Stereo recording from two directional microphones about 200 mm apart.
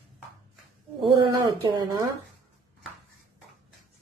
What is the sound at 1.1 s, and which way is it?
Speech, 20° right (ahead or behind).